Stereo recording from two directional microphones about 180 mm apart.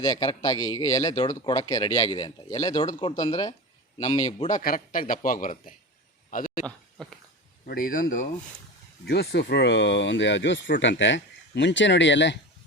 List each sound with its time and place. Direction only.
0.0 s speech: 25° left (ahead or behind)
4.1 s a man's voice: 40° left (ahead or behind)
6.7 s a sound: centre (ahead or behind)
7.7 s a man's voice: 50° left (ahead or behind)
9.0 s speech: 65° left (ahead or behind); by 12.4 s 80° left